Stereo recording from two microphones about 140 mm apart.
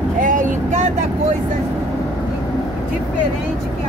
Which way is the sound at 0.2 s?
65° right (ahead or behind).